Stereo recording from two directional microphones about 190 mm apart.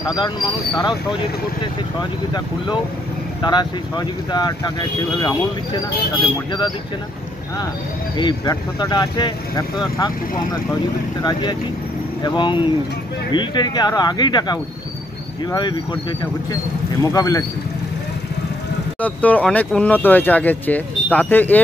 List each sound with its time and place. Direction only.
0.1 s speech: 20° left (ahead or behind)
2.0 s speech: 20° left (ahead or behind)
8.2 s speech: 25° left (ahead or behind)
18.9 s speech: 10° left (ahead or behind)